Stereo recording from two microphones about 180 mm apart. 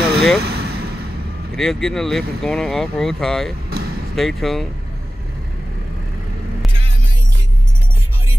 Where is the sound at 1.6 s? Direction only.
5° left (ahead or behind).